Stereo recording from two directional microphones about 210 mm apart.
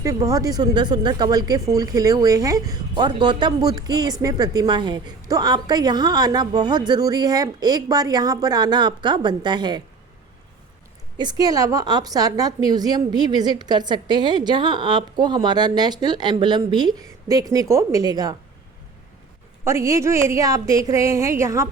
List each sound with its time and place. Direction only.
0.0 s a woman's voice: 15° right (ahead or behind)
11.2 s a woman's voice: 20° right (ahead or behind)
19.6 s speech: 15° right (ahead or behind)